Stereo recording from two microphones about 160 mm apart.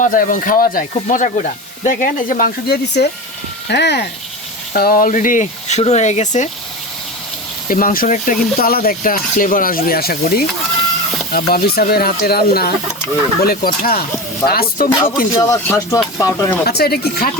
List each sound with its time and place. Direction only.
0.0 s speech: 55° left (ahead or behind)
0.9 s speech: 50° left (ahead or behind); by 4.0 s 90° left
4.7 s speech: 65° left (ahead or behind); by 6.5 s 45° left (ahead or behind)
7.7 s speech: 60° left (ahead or behind)
14.8 s speech: 15° left (ahead or behind)
16.6 s speech: 75° left (ahead or behind)